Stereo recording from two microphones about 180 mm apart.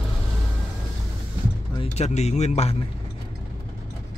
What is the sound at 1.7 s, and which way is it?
A man's voice, 35° left (ahead or behind).